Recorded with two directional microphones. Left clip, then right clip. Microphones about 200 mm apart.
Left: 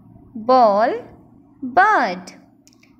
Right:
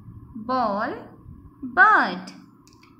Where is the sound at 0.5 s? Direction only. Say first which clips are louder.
Left 11 dB; 25° left (ahead or behind).